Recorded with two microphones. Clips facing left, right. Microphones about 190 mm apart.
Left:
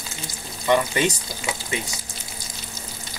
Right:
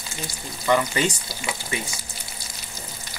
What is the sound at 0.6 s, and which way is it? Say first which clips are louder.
Frying: left 1 dB; 20° left (ahead or behind).